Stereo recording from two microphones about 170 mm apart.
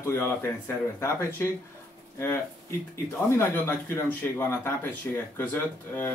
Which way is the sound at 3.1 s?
15° left (ahead or behind).